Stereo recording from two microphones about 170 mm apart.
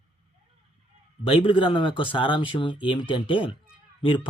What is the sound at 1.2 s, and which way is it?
Speech, 30° left (ahead or behind).